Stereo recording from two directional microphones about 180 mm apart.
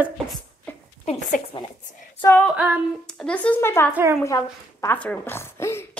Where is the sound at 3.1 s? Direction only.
5° left (ahead or behind).